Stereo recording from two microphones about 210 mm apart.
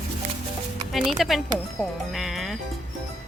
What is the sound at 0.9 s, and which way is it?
Speech, centre (ahead or behind).